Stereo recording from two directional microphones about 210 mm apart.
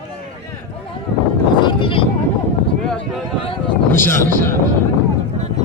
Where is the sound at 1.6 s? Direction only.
20° left (ahead or behind).